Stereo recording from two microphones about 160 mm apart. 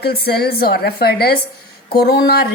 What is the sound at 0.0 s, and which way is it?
A woman's voice, 80° left.